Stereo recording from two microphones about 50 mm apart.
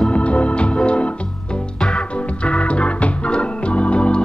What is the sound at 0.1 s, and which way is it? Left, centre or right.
Organ, left.